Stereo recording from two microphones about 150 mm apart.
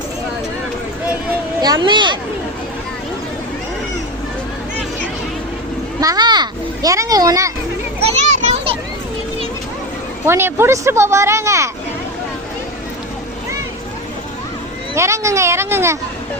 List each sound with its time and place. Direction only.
1.6 s speech: 30° right (ahead or behind)
6.0 s children playing: 25° right (ahead or behind)
8.1 s children playing: 45° right (ahead or behind)
10.2 s speech: 15° right (ahead or behind)
14.9 s speech: 20° right (ahead or behind)